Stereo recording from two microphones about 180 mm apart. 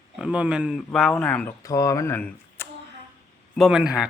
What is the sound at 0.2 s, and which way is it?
Speech, 5° right (ahead or behind).